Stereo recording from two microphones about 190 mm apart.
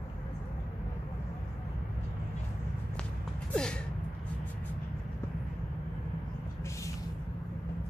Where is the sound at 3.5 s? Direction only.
5° left (ahead or behind).